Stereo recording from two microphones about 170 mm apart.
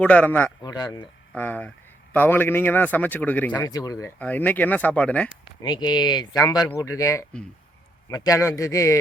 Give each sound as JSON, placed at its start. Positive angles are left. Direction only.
{"t": 0.0, "sound": "speech", "side_deg": 10}
{"t": 0.6, "sound": "speech", "side_deg": 20}
{"t": 1.4, "sound": "speech", "side_deg": 10}
{"t": 3.7, "sound": "speech", "side_deg": 20}
{"t": 5.6, "sound": "speech", "side_deg": 25}